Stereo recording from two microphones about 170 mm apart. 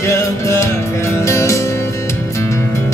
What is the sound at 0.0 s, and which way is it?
Music, 15° left (ahead or behind).